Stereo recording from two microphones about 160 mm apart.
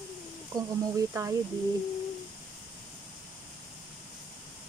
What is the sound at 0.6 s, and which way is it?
Speech, 20° right (ahead or behind).